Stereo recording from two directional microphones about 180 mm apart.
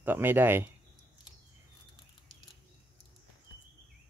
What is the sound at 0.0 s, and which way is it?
Speech, 10° right (ahead or behind).